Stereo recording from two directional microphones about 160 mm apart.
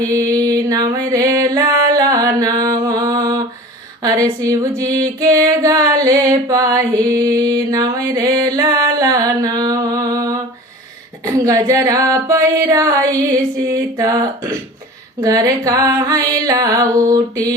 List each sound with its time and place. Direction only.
0.0 s music: 20° right (ahead or behind)
11.4 s music: 20° right (ahead or behind)